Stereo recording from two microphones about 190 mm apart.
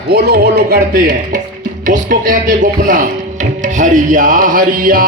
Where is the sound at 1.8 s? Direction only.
45° right (ahead or behind).